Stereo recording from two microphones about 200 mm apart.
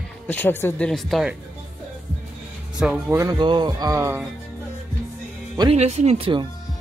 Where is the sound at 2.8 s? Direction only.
5° right (ahead or behind).